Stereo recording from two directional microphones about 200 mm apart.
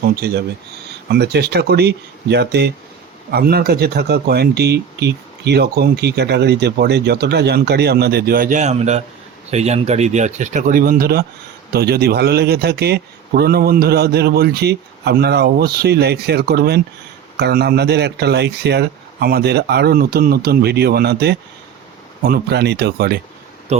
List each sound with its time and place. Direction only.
0.0 s speech: 55° right (ahead or behind)